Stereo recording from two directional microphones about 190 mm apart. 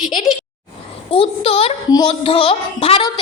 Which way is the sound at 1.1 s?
30° left (ahead or behind).